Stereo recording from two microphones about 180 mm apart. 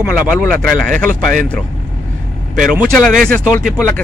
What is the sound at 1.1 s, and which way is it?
Speech, 50° right (ahead or behind).